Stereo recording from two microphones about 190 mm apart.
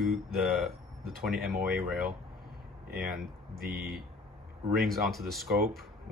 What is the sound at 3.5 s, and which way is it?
Speech, 55° right (ahead or behind).